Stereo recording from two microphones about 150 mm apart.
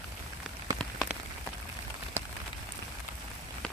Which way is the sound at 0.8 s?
Centre (ahead or behind).